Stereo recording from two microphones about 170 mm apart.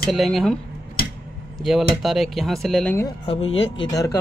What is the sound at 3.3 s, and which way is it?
Speech, 35° left (ahead or behind).